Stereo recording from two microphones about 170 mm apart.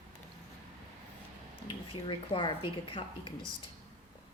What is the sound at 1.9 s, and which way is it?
A woman's voice, 30° left (ahead or behind).